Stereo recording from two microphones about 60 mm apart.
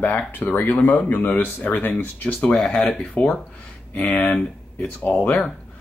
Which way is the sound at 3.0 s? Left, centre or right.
Left.